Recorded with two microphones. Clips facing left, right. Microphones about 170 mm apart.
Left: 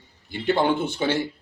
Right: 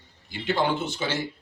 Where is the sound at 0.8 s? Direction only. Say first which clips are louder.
Left 5 dB; 60° left (ahead or behind).